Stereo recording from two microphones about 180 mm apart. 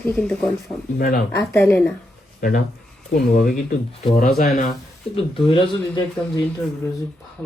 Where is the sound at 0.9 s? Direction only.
55° left (ahead or behind).